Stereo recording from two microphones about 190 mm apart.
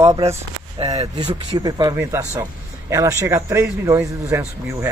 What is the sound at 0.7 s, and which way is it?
Speech, 30° right (ahead or behind).